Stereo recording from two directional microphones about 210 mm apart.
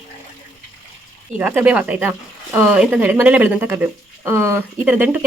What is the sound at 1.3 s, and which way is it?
Speech, 10° right (ahead or behind).